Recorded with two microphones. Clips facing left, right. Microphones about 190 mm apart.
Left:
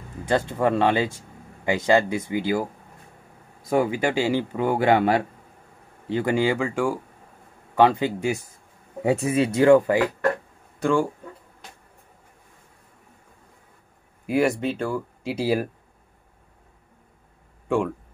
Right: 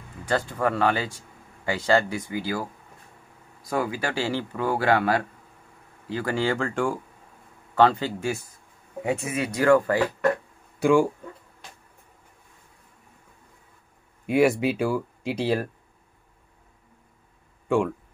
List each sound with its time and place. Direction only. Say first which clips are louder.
0.2 s speech: left 3 dB; 25° left (ahead or behind)
9.0 s speech: left 6 dB; 35° left (ahead or behind); by 10.0 s 15° left (ahead or behind)
10.8 s speech: right 2 dB; 10° right (ahead or behind)
14.2 s speech: right 1 dB; centre (ahead or behind)
15.3 s speech: left 2 dB; 10° left (ahead or behind)
17.6 s speech: even; centre (ahead or behind)